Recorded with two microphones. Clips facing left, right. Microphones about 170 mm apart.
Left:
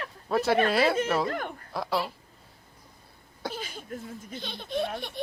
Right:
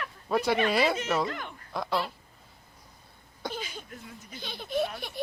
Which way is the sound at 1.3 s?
45° left (ahead or behind).